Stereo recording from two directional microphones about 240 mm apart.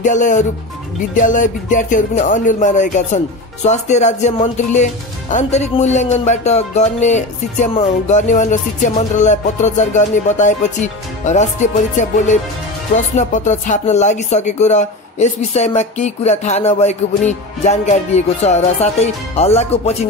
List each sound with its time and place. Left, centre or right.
0.0 s speech: left